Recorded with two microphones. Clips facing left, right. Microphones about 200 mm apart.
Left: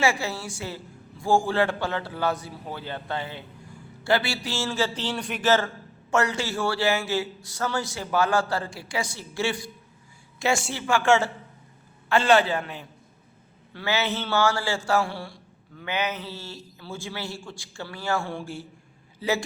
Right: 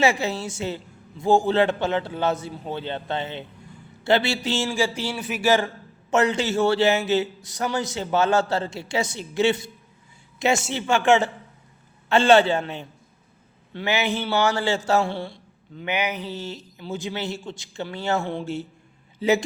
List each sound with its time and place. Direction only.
0.0 s a man's voice: 20° right (ahead or behind)
10.7 s a man's voice: 20° right (ahead or behind)